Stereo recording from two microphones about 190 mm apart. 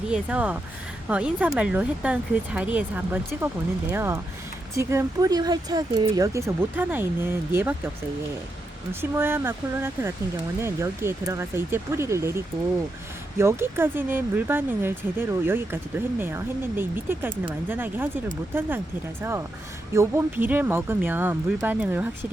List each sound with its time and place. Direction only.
0.1 s speech: 5° right (ahead or behind)
8.9 s speech: 10° right (ahead or behind)
13.4 s speech: 15° right (ahead or behind)
19.2 s speech: 15° right (ahead or behind)